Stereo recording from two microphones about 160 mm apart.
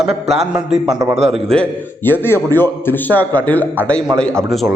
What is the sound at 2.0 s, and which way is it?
A man's voice, 15° left (ahead or behind).